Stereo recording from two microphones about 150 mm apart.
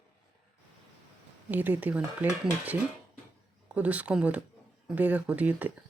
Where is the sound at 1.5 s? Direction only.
10° right (ahead or behind).